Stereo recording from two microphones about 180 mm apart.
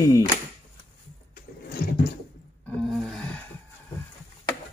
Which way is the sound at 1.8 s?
55° left (ahead or behind).